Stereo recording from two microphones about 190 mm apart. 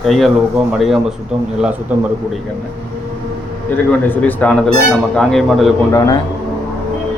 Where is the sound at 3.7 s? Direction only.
10° left (ahead or behind).